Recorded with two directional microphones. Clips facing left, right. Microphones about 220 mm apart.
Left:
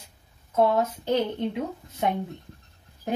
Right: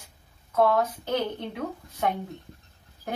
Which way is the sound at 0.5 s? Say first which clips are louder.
Left 1 dB; 25° left (ahead or behind).